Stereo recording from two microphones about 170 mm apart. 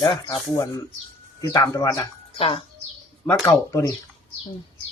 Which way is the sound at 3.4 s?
15° left (ahead or behind).